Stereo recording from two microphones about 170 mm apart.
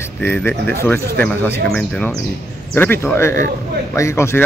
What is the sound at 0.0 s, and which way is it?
Speech, 15° left (ahead or behind).